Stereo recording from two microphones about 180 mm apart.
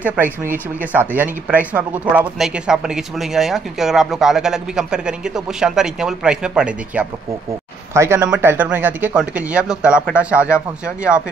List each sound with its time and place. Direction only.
0.0 s speech: 10° right (ahead or behind)